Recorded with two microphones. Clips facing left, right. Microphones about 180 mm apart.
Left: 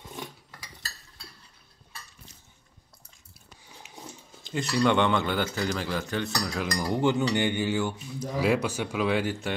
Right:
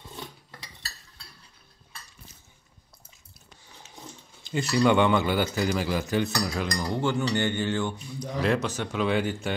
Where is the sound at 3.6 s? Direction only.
10° left (ahead or behind).